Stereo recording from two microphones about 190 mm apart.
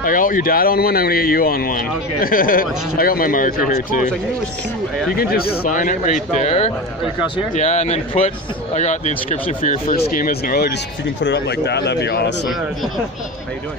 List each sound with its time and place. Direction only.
0.0 s speech: 45° left (ahead or behind)
5.1 s speech: 50° left (ahead or behind); by 10.1 s 30° left (ahead or behind)
10.1 s speech: 50° left (ahead or behind)
11.2 s speech: 65° left (ahead or behind)